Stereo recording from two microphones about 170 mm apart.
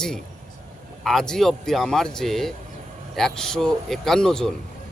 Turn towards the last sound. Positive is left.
turn(degrees=5)  # may be behind; listen again after turning